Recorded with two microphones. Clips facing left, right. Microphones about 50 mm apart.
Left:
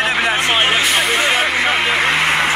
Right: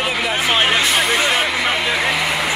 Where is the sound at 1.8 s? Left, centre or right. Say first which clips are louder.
Left 3 dB; left.